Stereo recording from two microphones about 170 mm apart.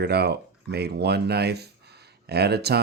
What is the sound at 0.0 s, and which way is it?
Speech, 75° right (ahead or behind).